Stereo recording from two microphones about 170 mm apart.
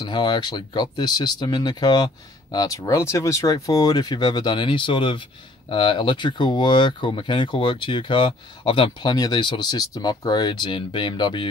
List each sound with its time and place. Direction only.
0.0 s speech: 25° left (ahead or behind)